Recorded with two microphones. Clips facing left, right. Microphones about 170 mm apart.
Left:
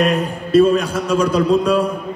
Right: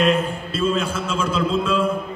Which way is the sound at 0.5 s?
40° left (ahead or behind).